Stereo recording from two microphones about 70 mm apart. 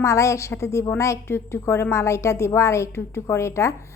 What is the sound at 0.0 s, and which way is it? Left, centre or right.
A woman's voice, left.